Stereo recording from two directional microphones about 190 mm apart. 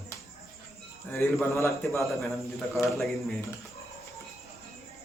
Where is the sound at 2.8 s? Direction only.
Centre (ahead or behind).